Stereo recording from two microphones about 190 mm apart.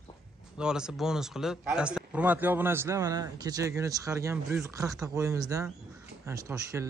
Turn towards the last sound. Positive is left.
turn(degrees=-15)  # may be behind; listen again after turning